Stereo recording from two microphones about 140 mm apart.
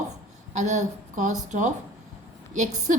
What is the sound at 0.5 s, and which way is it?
A woman's voice, 60° right (ahead or behind).